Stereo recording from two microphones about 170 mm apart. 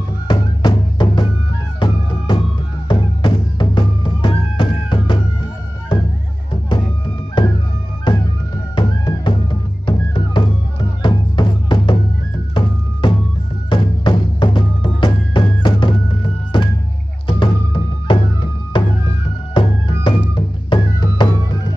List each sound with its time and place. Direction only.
0.3 s music: 25° left (ahead or behind)
7.4 s music: 30° left (ahead or behind)
8.7 s music: 30° left (ahead or behind)
13.0 s music: 30° left (ahead or behind)